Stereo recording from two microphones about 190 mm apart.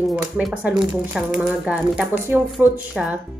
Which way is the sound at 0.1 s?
5° right (ahead or behind).